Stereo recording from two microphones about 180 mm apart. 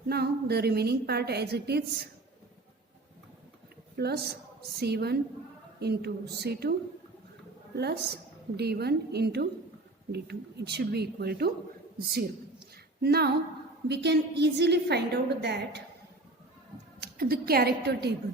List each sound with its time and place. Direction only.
0.1 s a woman's voice: 60° right (ahead or behind)
3.9 s a woman's voice: 65° right (ahead or behind)
7.8 s a woman's voice: 65° right (ahead or behind)
13.0 s a woman's voice: 65° right (ahead or behind)
17.0 s a woman's voice: 55° right (ahead or behind)